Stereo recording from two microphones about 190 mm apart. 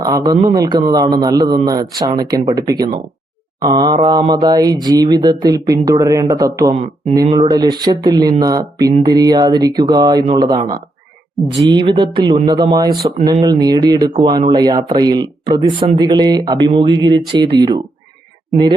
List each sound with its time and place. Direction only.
0.0 s speech: 20° right (ahead or behind)